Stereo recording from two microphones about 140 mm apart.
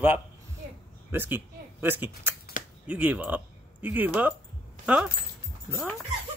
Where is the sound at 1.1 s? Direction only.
15° right (ahead or behind).